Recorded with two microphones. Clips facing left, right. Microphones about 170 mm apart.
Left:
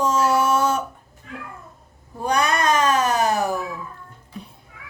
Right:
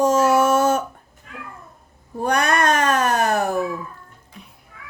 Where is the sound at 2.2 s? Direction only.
60° right (ahead or behind).